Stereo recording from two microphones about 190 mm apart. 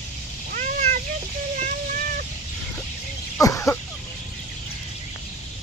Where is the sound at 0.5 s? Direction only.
40° right (ahead or behind).